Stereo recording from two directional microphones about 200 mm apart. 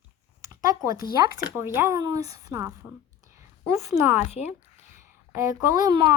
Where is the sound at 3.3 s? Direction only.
15° right (ahead or behind).